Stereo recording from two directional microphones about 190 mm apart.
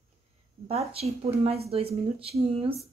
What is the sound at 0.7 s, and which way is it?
Speech, 30° right (ahead or behind).